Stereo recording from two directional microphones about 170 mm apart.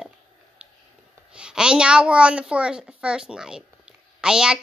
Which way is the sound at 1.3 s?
5° right (ahead or behind).